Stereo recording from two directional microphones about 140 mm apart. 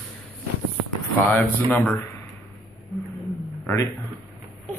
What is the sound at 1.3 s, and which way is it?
Speech, 10° left (ahead or behind).